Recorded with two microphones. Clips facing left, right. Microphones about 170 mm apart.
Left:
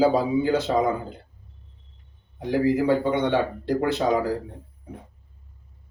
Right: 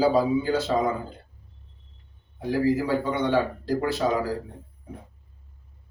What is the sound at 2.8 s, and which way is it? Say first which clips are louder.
A man's voice: left 3 dB; 20° left (ahead or behind).